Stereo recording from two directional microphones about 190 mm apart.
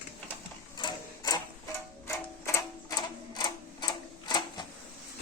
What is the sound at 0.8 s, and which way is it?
Sewing machine, 20° left (ahead or behind).